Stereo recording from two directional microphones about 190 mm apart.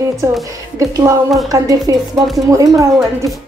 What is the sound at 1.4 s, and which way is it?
Speech, 20° right (ahead or behind).